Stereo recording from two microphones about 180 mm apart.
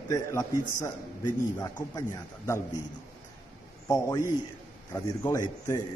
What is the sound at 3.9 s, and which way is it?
A man's voice, 15° left (ahead or behind).